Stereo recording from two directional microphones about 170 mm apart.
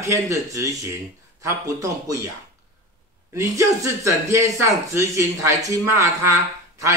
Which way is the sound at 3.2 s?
20° right (ahead or behind).